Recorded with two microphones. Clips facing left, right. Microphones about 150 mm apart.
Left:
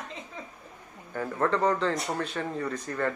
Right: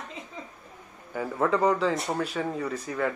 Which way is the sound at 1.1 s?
5° right (ahead or behind).